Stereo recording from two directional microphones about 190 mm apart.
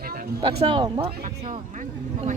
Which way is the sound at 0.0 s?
50° right (ahead or behind).